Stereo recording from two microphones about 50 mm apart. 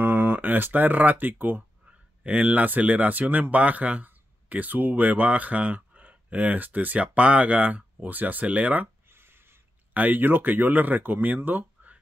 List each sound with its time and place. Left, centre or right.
0.0 s speech: right
9.1 s a sound: right
9.9 s speech: right